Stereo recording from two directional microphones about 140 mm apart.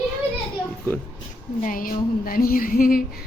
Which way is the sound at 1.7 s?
85° left.